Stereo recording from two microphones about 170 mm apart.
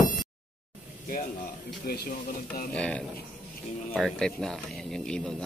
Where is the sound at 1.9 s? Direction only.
65° left (ahead or behind).